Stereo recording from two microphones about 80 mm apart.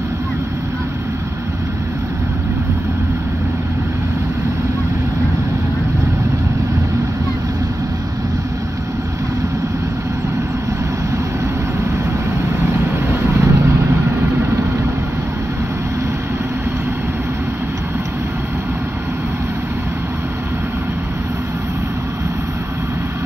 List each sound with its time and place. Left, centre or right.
13.1 s vehicle: right